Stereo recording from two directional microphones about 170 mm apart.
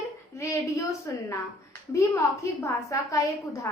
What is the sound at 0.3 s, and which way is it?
A woman's voice, 15° left (ahead or behind).